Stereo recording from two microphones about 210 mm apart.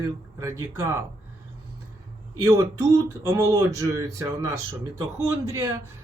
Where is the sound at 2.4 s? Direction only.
15° right (ahead or behind).